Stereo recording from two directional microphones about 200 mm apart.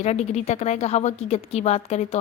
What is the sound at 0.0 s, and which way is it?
A woman's voice, 35° left (ahead or behind).